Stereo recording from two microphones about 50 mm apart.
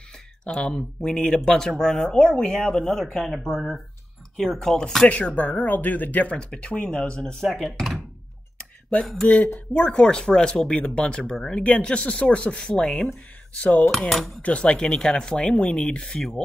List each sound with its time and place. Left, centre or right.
0.5 s speech: centre
5.1 s speech: left
6.3 s speech: left
7.4 s speech: centre
9.3 s speech: left
9.8 s speech: centre
13.9 s speech: centre
14.4 s speech: left